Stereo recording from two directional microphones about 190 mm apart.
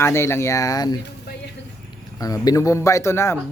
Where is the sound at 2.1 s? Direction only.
20° left (ahead or behind).